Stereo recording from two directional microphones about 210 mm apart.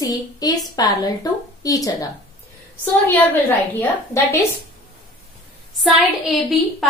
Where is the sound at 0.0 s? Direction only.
15° left (ahead or behind).